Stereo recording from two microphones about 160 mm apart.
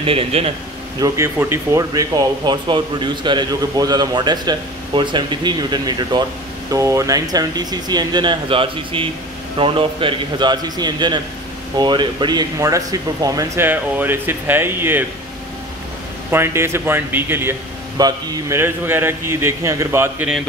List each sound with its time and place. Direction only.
0.0 s speech: 35° right (ahead or behind)
0.9 s speech: 20° right (ahead or behind)
16.3 s speech: 15° right (ahead or behind)
17.9 s speech: 25° right (ahead or behind)